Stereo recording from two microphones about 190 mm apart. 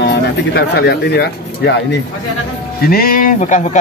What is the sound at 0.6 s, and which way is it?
Speech, 60° left (ahead or behind).